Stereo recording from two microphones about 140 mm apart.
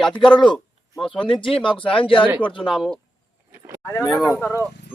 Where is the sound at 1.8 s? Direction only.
40° left (ahead or behind).